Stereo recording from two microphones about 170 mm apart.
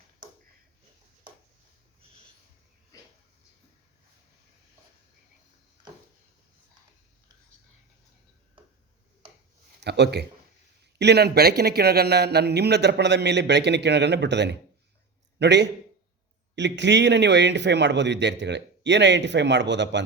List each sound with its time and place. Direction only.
9.8 s a man's voice: 80° right